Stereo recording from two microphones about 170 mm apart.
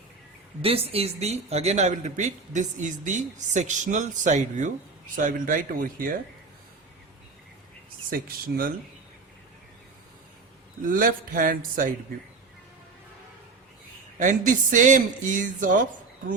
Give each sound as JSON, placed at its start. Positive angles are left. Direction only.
{"t": 0.6, "sound": "speech", "side_deg": -35}
{"t": 8.1, "sound": "speech", "side_deg": -60}
{"t": 10.8, "sound": "speech", "side_deg": -55}
{"t": 14.2, "sound": "speech", "side_deg": -50}